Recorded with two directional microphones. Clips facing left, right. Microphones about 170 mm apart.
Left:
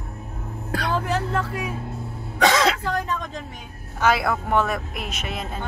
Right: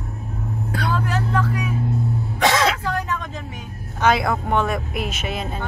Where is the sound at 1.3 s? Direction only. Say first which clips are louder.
Right 3 dB; 25° left (ahead or behind).